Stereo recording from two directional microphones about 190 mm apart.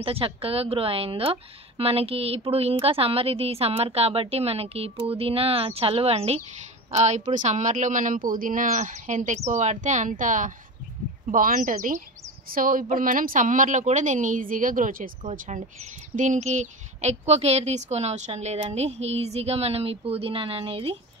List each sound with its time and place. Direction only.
0.0 s a woman's voice: 30° right (ahead or behind)